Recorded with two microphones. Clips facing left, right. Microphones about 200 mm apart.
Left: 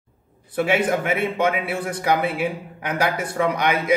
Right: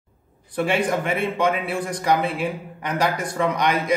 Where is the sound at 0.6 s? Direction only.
5° left (ahead or behind).